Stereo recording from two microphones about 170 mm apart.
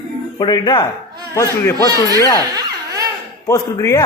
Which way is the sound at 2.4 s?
20° right (ahead or behind).